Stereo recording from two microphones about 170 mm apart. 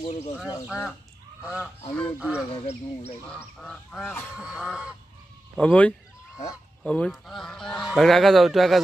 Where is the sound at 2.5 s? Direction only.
40° left (ahead or behind).